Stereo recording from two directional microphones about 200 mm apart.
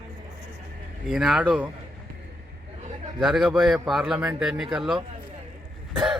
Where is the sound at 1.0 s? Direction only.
Centre (ahead or behind).